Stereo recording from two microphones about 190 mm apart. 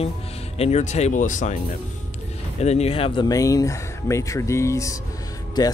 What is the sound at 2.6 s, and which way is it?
Speech, 35° left (ahead or behind).